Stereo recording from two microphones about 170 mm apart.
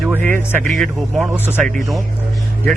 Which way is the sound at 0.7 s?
Centre (ahead or behind).